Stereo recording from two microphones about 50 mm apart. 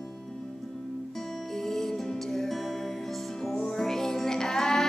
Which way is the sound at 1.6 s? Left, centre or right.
Centre.